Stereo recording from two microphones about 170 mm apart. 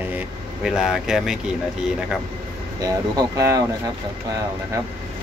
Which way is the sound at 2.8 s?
20° right (ahead or behind).